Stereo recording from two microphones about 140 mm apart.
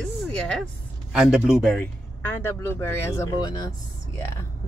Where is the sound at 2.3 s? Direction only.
15° left (ahead or behind).